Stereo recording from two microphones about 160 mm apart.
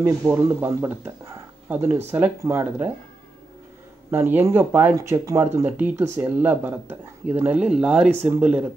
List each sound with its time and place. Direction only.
0.0 s speech: 15° right (ahead or behind)
4.1 s speech: 15° right (ahead or behind)